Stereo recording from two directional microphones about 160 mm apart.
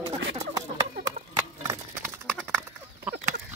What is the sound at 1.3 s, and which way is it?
Clip-clop, 20° right (ahead or behind).